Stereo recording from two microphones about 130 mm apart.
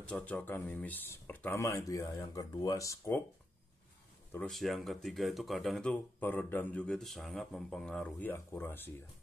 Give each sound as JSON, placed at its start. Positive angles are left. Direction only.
{"t": 0.0, "sound": "speech", "side_deg": 10}
{"t": 4.5, "sound": "speech", "side_deg": 0}